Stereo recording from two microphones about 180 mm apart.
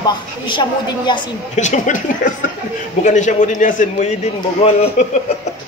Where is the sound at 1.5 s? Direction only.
40° left (ahead or behind).